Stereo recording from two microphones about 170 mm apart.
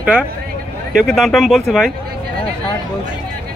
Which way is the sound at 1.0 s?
Centre (ahead or behind).